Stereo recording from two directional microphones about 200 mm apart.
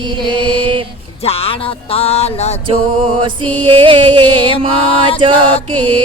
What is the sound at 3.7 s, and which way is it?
Music, 25° right (ahead or behind).